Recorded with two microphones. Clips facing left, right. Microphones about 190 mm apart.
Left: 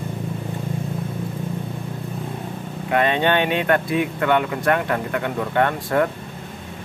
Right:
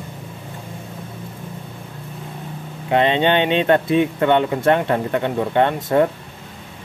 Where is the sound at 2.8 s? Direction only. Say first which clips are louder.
Right 3 dB; 25° right (ahead or behind).